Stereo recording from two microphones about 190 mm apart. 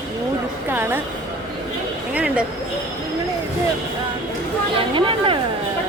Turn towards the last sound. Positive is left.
turn(degrees=-25)  # may be behind; listen again after turning